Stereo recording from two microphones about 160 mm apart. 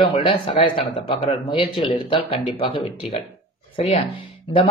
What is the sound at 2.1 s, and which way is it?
Speech, 35° left (ahead or behind).